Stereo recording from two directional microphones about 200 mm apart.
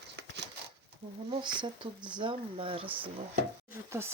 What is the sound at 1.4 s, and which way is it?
Speech, 25° right (ahead or behind).